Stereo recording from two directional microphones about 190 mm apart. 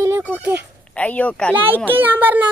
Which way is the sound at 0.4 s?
10° right (ahead or behind).